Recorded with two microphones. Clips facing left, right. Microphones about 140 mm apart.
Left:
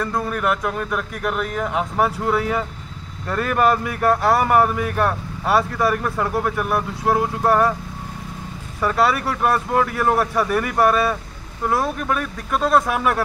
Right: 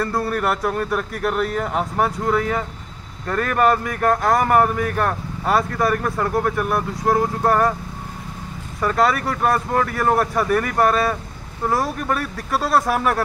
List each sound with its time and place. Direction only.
0.3 s speech: centre (ahead or behind)
8.8 s speech: 5° left (ahead or behind)